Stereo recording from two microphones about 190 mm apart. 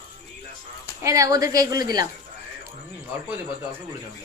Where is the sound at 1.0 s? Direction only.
15° right (ahead or behind).